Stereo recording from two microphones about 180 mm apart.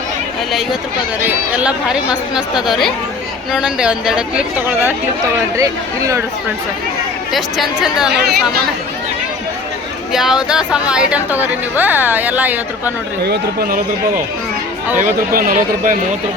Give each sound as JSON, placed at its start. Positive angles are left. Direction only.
{"t": 1.2, "sound": "speech", "side_deg": -10}
{"t": 7.3, "sound": "speech", "side_deg": 0}
{"t": 8.2, "sound": "speech", "side_deg": -60}
{"t": 10.1, "sound": "speech", "side_deg": 0}
{"t": 13.2, "sound": "speech", "side_deg": -60}
{"t": 14.9, "sound": "speech", "side_deg": -50}